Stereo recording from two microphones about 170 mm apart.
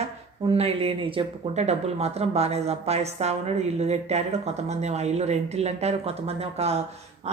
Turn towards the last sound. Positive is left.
turn(degrees=-40)  # may be behind; listen again after turning